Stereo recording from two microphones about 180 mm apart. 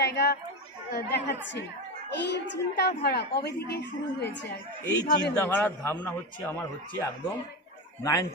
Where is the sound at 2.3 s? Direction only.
70° left (ahead or behind).